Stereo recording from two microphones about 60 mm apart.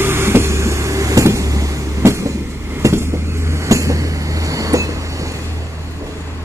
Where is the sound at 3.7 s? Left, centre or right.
Right.